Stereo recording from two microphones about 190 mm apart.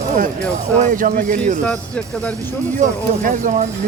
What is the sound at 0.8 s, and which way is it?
Speech, 45° right (ahead or behind).